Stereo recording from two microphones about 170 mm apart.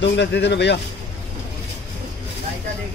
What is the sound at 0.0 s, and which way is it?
Speech, 90° left.